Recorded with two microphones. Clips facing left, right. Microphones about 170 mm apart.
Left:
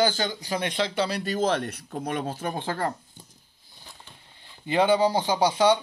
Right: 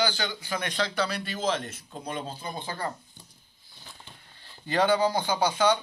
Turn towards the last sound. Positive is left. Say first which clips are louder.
# left 3 dB
turn(degrees=30)  # may be behind; listen again after turning